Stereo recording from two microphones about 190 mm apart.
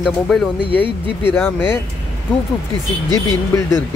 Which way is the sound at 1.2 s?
10° left (ahead or behind).